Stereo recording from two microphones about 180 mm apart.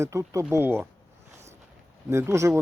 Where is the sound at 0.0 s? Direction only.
15° right (ahead or behind).